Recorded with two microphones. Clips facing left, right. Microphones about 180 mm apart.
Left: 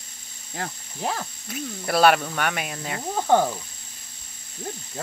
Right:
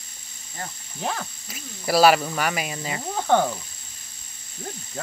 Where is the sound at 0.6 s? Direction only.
80° left.